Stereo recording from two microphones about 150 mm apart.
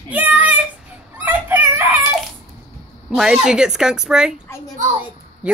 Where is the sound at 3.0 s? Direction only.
5° right (ahead or behind).